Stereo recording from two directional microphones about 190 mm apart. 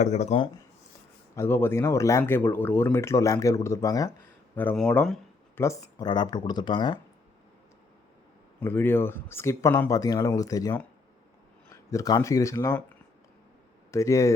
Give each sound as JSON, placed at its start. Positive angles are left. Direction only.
{"t": 0.0, "sound": "speech", "side_deg": 35}
{"t": 1.4, "sound": "speech", "side_deg": 10}
{"t": 4.5, "sound": "speech", "side_deg": 5}
{"t": 8.6, "sound": "speech", "side_deg": 10}
{"t": 13.9, "sound": "speech", "side_deg": 15}